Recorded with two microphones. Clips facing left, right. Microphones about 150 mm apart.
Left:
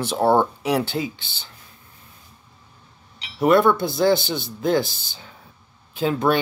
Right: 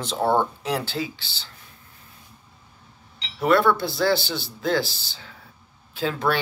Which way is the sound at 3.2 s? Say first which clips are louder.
Left 3 dB; 20° left (ahead or behind).